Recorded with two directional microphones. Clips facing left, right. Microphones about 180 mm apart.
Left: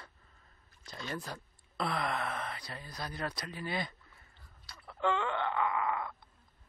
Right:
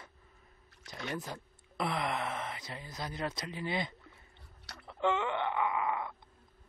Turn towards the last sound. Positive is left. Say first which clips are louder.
# even
turn(degrees=-20)  # may be behind; listen again after turning